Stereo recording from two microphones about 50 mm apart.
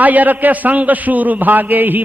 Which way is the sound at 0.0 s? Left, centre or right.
Right.